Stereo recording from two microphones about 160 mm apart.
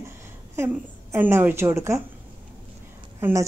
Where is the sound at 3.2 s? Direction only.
15° right (ahead or behind).